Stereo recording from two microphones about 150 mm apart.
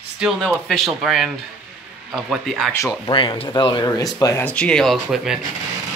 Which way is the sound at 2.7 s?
20° left (ahead or behind).